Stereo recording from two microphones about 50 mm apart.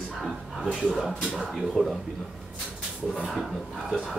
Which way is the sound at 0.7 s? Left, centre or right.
Centre.